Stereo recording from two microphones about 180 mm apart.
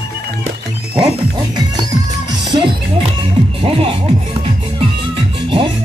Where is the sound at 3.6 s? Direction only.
30° right (ahead or behind).